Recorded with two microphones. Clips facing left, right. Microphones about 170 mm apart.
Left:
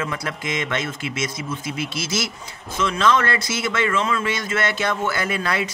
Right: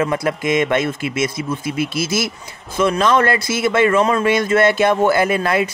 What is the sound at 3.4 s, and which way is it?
Speech, 55° right (ahead or behind).